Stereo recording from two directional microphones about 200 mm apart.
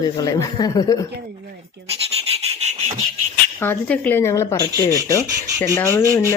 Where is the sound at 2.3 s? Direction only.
30° right (ahead or behind).